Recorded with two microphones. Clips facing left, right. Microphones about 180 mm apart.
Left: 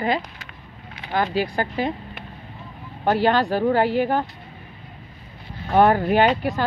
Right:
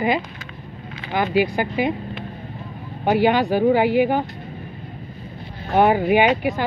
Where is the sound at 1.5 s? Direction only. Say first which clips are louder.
Right 3 dB; 15° right (ahead or behind).